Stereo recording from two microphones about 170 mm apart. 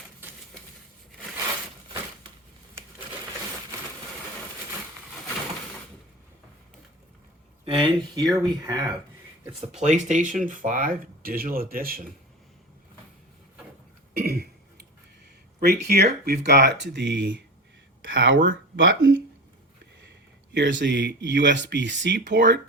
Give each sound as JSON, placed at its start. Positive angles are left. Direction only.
{"t": 7.6, "sound": "speech", "side_deg": -30}
{"t": 9.8, "sound": "speech", "side_deg": -45}
{"t": 14.2, "sound": "throat clearing", "side_deg": -60}
{"t": 15.6, "sound": "speech", "side_deg": -75}
{"t": 20.5, "sound": "speech", "side_deg": -90}